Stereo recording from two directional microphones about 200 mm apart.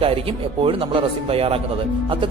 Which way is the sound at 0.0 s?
25° right (ahead or behind).